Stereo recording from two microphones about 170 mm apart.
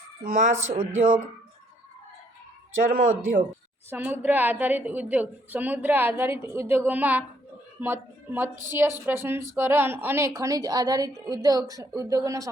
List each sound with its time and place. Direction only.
0.3 s speech: 50° right (ahead or behind)
2.9 s speech: 50° right (ahead or behind)
3.8 s speech: 10° right (ahead or behind)